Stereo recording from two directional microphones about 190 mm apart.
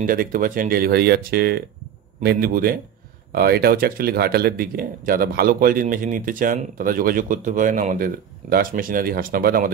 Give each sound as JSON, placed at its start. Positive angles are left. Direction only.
{"t": 0.0, "sound": "speech", "side_deg": -50}